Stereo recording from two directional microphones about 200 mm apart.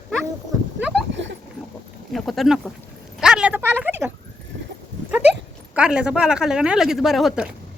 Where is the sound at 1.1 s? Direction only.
65° right (ahead or behind).